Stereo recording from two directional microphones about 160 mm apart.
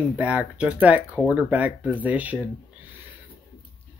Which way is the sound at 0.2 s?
10° right (ahead or behind).